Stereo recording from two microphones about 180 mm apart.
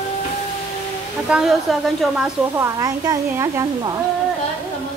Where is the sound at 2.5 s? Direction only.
15° right (ahead or behind).